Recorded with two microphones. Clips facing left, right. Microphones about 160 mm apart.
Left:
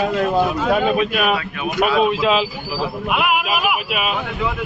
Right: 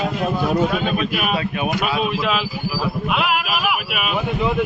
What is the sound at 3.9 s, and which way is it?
Speech, 30° left (ahead or behind).